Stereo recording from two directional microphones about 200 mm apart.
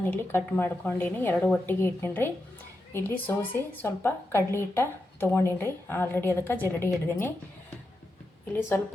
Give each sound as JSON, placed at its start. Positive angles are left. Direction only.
{"t": 0.0, "sound": "speech", "side_deg": 10}